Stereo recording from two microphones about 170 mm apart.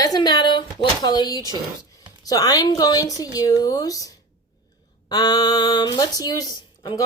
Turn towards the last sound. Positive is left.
turn(degrees=20)  # may be behind; listen again after turning